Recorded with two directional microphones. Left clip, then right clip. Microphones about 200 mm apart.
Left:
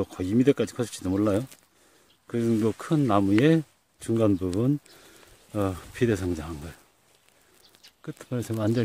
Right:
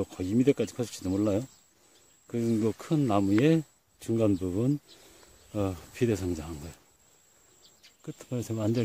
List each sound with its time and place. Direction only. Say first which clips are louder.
0.0 s speech: left 3 dB; centre (ahead or behind)
8.0 s speech: left 3 dB; 5° right (ahead or behind)